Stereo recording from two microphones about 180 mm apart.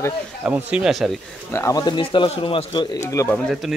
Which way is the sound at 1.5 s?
15° left (ahead or behind).